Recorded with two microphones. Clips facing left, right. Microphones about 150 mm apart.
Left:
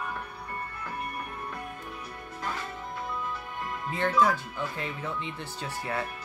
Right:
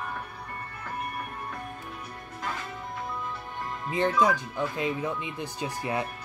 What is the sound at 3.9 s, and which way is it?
Speech, 15° right (ahead or behind).